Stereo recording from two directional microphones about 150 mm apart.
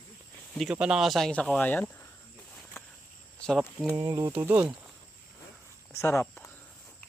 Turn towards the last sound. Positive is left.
turn(degrees=20)  # may be behind; listen again after turning